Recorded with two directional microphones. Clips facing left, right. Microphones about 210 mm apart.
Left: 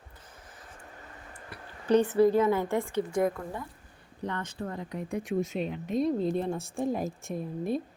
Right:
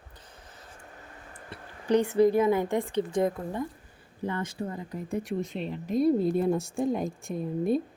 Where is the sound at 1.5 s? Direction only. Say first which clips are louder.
Right 2 dB; 25° right (ahead or behind).